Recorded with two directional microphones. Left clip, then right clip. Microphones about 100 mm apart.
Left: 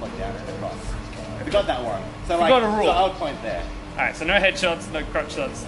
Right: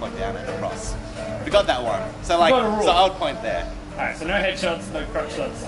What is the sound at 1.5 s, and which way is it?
A man's voice, 15° right (ahead or behind).